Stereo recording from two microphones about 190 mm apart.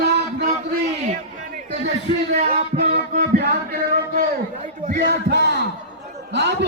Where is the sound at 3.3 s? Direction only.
55° right (ahead or behind).